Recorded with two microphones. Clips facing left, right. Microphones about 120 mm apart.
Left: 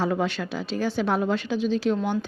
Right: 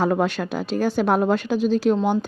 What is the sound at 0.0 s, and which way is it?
A woman's voice, 50° right (ahead or behind).